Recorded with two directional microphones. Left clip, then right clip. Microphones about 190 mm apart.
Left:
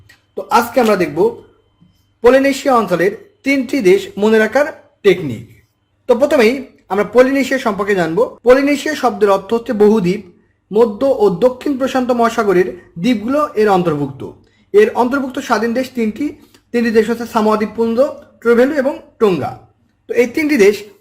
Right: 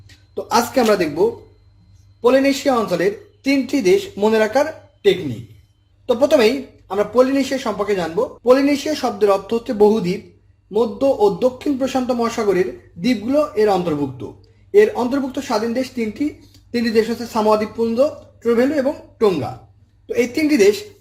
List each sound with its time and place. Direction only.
0.1 s speech: 5° left (ahead or behind)
2.2 s speech: 30° left (ahead or behind)
2.9 s speech: 15° left (ahead or behind)